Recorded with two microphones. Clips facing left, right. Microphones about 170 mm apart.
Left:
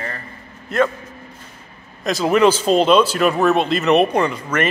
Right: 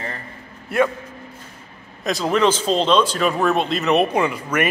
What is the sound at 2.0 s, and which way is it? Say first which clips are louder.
Speech: left 4 dB; centre (ahead or behind).